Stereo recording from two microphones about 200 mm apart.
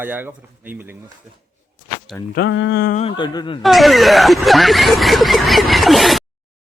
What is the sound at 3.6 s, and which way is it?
Speech, centre (ahead or behind).